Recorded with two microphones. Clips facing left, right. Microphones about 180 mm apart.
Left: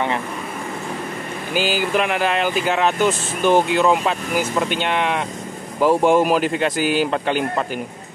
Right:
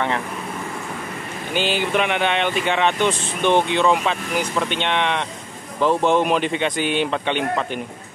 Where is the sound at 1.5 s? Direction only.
5° left (ahead or behind).